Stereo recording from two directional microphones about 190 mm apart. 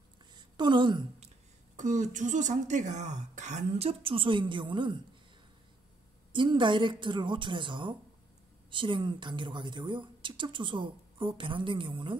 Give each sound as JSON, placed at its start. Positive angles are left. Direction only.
{"t": 0.3, "sound": "a sound", "side_deg": -25}
{"t": 1.8, "sound": "speech", "side_deg": -40}
{"t": 6.3, "sound": "speech", "side_deg": -25}